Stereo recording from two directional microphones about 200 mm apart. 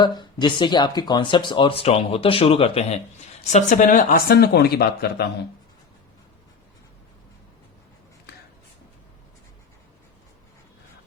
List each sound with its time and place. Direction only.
0.0 s speech: 20° left (ahead or behind); by 5.2 s 50° left (ahead or behind)